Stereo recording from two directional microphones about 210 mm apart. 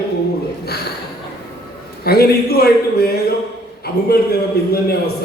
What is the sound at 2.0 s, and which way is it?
A man's voice, 50° left (ahead or behind).